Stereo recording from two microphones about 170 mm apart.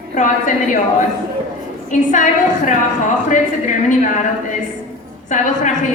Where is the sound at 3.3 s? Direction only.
50° left (ahead or behind).